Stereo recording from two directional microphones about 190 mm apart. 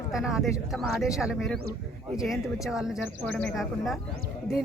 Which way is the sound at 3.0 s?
10° left (ahead or behind).